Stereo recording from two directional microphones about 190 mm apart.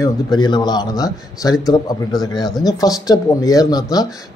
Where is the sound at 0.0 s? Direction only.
25° left (ahead or behind).